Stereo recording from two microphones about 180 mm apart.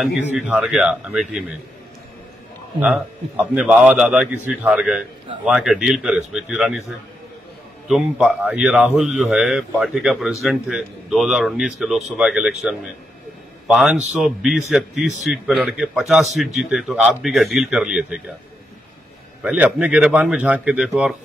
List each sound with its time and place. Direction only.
0.0 s a man's voice: 5° right (ahead or behind)
2.8 s a man's voice: 5° right (ahead or behind)
7.9 s a man's voice: 5° right (ahead or behind)
13.7 s a man's voice: 5° right (ahead or behind)
19.4 s a man's voice: 5° right (ahead or behind)